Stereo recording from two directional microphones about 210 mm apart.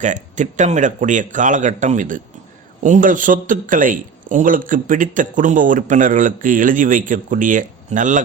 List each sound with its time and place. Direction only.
0.0 s speech: 35° right (ahead or behind)